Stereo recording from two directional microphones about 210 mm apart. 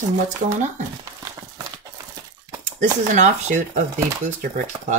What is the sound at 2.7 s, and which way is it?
Speech, 35° right (ahead or behind).